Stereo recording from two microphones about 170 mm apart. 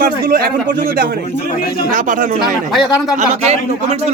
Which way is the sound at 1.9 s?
50° right (ahead or behind).